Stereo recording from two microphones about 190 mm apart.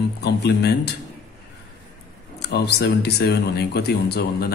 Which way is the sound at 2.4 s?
60° left (ahead or behind).